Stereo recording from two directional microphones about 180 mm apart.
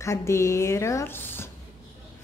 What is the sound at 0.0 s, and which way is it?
A woman's voice, 15° left (ahead or behind).